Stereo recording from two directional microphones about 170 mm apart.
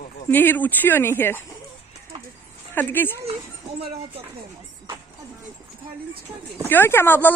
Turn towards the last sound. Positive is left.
turn(degrees=10)  # may be behind; listen again after turning